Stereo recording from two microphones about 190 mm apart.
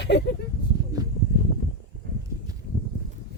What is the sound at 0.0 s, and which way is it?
Speech, 60° left (ahead or behind).